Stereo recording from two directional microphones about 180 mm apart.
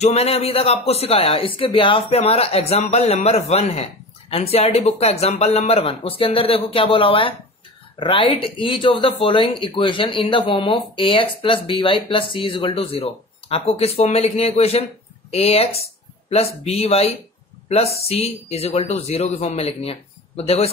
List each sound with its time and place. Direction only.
0.0 s speech: 35° left (ahead or behind)